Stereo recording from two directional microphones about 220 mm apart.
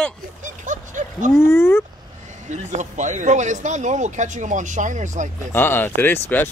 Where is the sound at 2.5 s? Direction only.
35° right (ahead or behind).